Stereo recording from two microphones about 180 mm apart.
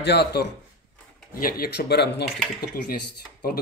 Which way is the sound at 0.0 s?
65° left (ahead or behind).